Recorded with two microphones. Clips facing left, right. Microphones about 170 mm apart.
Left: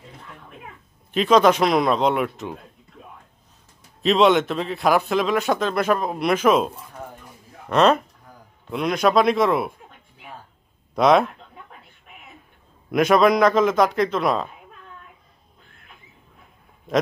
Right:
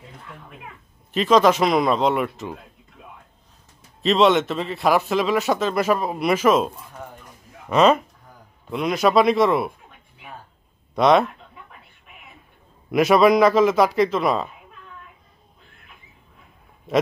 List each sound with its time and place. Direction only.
1.1 s speech: centre (ahead or behind)
4.0 s speech: centre (ahead or behind)
7.7 s speech: 5° right (ahead or behind)
11.0 s speech: centre (ahead or behind)
12.9 s speech: centre (ahead or behind)